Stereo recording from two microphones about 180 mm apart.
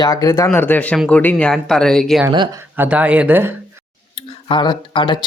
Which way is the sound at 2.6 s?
10° right (ahead or behind).